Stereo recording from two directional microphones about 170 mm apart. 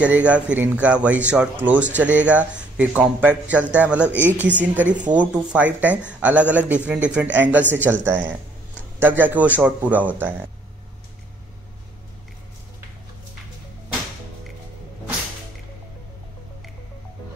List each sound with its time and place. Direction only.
0.0 s speech: 10° right (ahead or behind)